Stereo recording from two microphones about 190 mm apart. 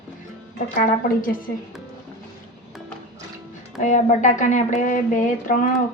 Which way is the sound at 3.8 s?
40° left (ahead or behind).